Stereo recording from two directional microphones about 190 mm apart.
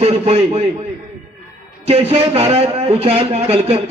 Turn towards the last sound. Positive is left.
turn(degrees=-30)  # may be behind; listen again after turning